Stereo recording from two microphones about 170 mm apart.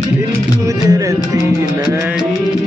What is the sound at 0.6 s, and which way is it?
Music, 20° right (ahead or behind).